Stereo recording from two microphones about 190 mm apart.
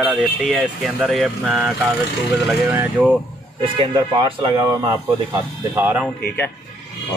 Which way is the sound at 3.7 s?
25° right (ahead or behind).